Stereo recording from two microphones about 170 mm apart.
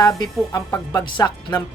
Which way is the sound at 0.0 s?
20° left (ahead or behind).